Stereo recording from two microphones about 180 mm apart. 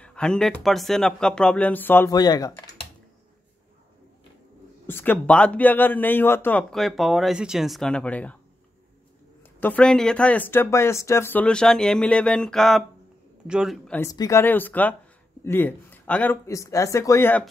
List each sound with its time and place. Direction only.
0.0 s speech: 5° left (ahead or behind)
4.8 s a man's voice: 10° left (ahead or behind)
9.6 s a man's voice: 10° left (ahead or behind)
13.8 s a man's voice: 10° left (ahead or behind)